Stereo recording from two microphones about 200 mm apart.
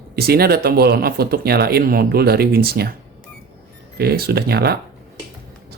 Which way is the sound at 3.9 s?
50° right (ahead or behind).